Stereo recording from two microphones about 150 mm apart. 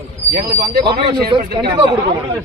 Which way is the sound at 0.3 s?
90° right.